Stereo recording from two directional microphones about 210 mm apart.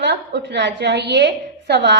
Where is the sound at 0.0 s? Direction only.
55° right (ahead or behind).